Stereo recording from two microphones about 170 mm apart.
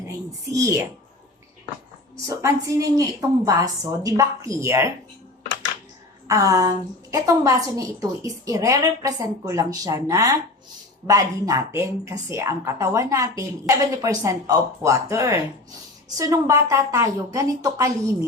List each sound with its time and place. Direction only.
0.5 s speech: 15° right (ahead or behind)
2.2 s a woman's voice: 20° right (ahead or behind)
6.2 s a woman's voice: 20° right (ahead or behind)